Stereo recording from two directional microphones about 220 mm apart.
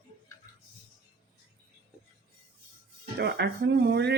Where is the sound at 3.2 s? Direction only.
50° right (ahead or behind).